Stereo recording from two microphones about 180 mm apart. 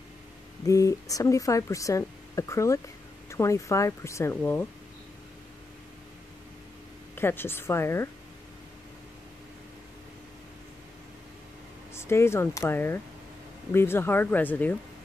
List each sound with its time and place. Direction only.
0.7 s speech: 20° left (ahead or behind)
7.2 s speech: 10° left (ahead or behind)
11.9 s speech: 15° left (ahead or behind)